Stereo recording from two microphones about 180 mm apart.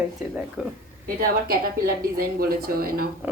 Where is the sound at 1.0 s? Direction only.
55° right (ahead or behind).